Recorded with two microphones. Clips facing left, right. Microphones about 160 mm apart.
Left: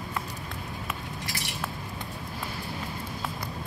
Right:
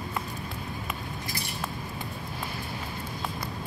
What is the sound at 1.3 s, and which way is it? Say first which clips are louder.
Cutlery: right 1 dB; 80° left.